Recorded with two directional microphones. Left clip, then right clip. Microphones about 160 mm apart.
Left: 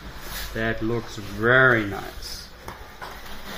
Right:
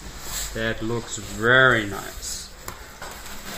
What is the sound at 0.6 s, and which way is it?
Speech, 30° left (ahead or behind).